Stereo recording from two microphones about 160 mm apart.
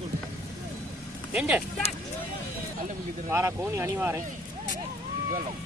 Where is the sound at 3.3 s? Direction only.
15° right (ahead or behind).